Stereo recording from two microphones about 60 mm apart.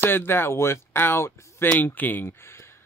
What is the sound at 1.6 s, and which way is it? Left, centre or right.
Speech, left.